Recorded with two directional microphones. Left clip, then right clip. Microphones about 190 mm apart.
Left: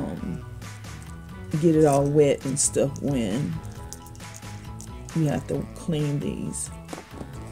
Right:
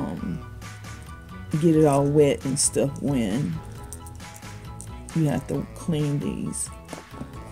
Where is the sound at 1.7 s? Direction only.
20° right (ahead or behind).